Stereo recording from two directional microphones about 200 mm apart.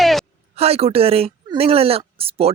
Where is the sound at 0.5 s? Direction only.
30° right (ahead or behind).